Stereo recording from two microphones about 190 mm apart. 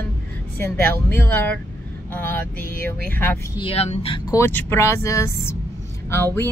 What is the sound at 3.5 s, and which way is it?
Speech, 30° left (ahead or behind).